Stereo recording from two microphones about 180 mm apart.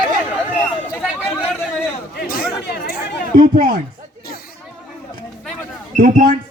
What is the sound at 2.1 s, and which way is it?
Chatter, 60° left (ahead or behind).